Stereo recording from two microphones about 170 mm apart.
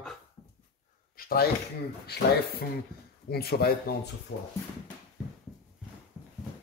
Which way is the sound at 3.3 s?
65° left (ahead or behind).